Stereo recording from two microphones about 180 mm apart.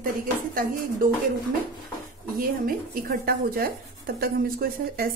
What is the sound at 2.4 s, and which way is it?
Speech, 55° right (ahead or behind).